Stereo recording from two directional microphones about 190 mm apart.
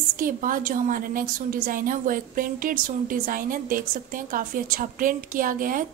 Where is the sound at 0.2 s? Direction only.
45° right (ahead or behind).